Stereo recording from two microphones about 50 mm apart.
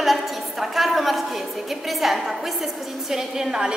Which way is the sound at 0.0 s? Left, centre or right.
Centre.